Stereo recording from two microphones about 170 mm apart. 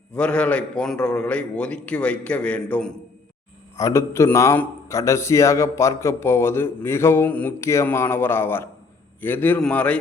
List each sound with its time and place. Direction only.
0.1 s a man's voice: 5° left (ahead or behind)